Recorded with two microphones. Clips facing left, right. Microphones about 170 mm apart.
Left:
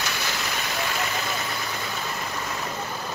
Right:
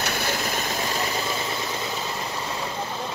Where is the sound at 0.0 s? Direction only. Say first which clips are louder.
Right 4 dB; 50° right (ahead or behind); by 1.2 s 30° right (ahead or behind).